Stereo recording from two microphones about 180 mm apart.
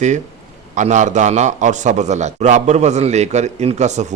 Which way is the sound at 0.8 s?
40° right (ahead or behind).